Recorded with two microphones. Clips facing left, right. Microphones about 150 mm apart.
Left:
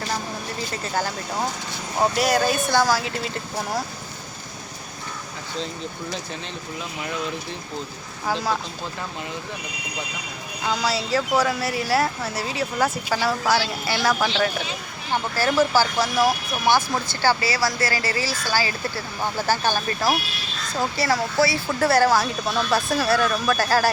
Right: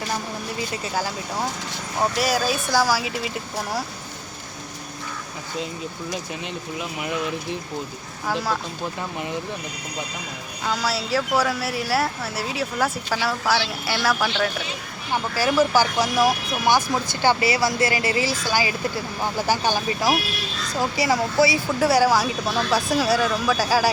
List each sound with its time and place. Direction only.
0.9 s speech: 5° right (ahead or behind)
9.0 s speech: 20° right (ahead or behind)
10.6 s speech: centre (ahead or behind)
15.4 s speech: 10° right (ahead or behind)